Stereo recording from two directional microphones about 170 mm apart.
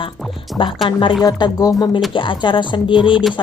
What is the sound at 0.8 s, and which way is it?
Speech, 30° left (ahead or behind).